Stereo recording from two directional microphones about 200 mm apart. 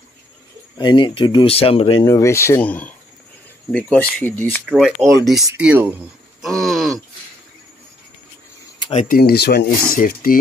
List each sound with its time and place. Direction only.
0.7 s speech: 25° left (ahead or behind)
2.0 s speech: 15° left (ahead or behind); by 7.0 s centre (ahead or behind)
8.7 s a sound: 25° left (ahead or behind)
9.0 s speech: 50° left (ahead or behind)